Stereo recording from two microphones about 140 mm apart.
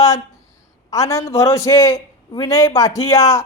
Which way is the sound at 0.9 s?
25° left (ahead or behind).